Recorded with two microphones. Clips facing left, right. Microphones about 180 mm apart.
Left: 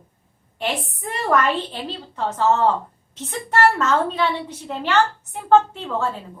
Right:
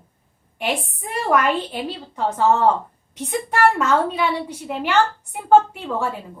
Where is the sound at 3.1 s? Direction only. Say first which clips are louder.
Even; 15° right (ahead or behind).